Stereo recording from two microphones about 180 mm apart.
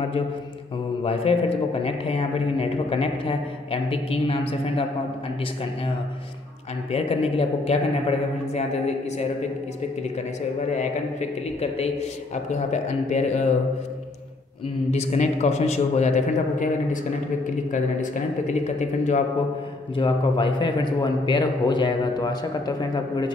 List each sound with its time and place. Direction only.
1.0 s a man's voice: 35° left (ahead or behind)
6.9 s a man's voice: 35° left (ahead or behind)
10.7 s a man's voice: 40° left (ahead or behind)
14.9 s a man's voice: 40° left (ahead or behind)
20.0 s a man's voice: 25° left (ahead or behind)